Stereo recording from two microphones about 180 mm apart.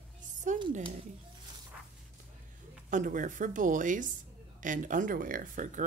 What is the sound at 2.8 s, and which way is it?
Speech, 45° right (ahead or behind).